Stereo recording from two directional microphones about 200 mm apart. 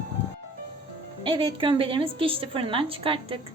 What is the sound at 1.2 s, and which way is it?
A woman's voice, 25° right (ahead or behind).